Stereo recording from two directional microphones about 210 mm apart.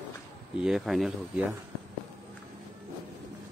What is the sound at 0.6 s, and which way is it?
Speech, centre (ahead or behind).